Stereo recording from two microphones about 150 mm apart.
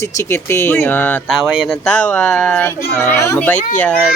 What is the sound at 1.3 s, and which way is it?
Speech, centre (ahead or behind).